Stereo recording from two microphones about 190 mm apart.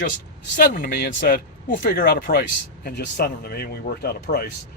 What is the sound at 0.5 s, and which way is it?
Speech, 45° left (ahead or behind).